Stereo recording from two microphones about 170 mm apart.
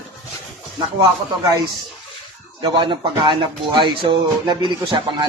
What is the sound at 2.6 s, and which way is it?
Speech, 30° right (ahead or behind).